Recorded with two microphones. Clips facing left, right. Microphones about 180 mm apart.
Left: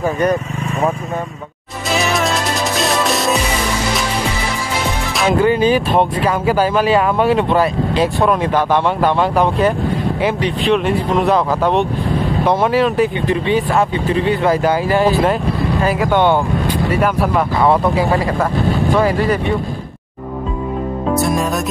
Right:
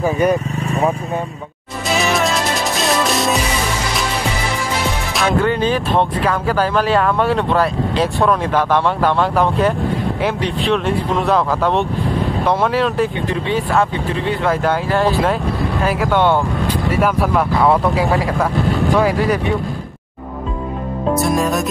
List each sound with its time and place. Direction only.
0.0 s speech: 10° right (ahead or behind)
0.6 s vehicle: 35° right (ahead or behind)
2.0 s music: centre (ahead or behind)
5.4 s speech: 5° left (ahead or behind)
21.1 s music: centre (ahead or behind)